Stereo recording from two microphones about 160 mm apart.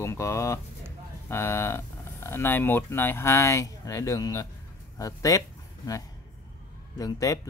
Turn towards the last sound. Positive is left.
turn(degrees=20)  # may be behind; listen again after turning